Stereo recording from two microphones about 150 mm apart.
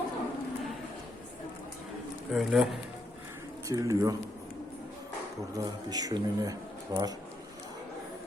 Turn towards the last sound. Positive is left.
turn(degrees=-25)  # may be behind; listen again after turning